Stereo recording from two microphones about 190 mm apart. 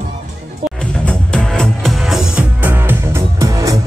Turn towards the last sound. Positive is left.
turn(degrees=-15)  # may be behind; listen again after turning